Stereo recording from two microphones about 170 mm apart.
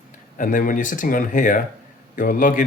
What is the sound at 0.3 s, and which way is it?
Speech, 55° left (ahead or behind).